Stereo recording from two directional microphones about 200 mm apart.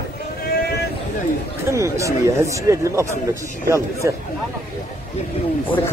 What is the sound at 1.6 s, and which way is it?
Speech, 15° right (ahead or behind).